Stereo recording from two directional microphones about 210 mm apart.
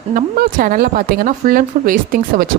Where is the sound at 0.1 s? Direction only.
40° right (ahead or behind).